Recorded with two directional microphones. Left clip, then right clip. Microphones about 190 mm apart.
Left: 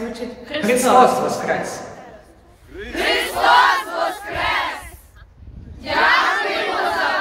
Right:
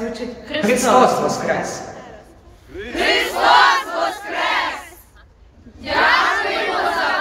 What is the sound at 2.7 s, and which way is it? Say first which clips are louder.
Speech: right 2 dB; 10° left (ahead or behind).